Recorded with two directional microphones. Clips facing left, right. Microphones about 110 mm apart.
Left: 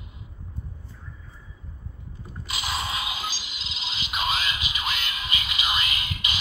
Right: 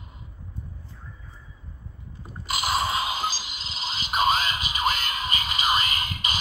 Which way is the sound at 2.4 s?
45° right (ahead or behind).